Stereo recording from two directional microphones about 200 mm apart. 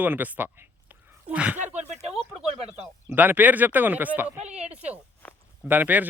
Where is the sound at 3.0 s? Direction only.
10° right (ahead or behind).